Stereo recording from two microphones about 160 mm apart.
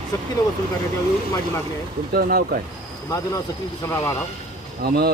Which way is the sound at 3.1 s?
20° left (ahead or behind).